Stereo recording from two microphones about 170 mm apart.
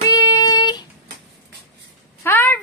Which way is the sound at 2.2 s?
10° left (ahead or behind).